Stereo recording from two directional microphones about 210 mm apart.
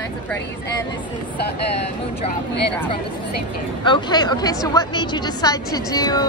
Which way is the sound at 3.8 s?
20° left (ahead or behind).